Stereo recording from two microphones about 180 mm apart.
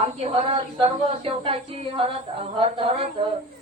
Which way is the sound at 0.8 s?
30° right (ahead or behind).